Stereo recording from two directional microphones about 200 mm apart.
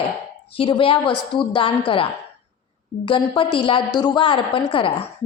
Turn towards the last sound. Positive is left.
turn(degrees=30)  # may be behind; listen again after turning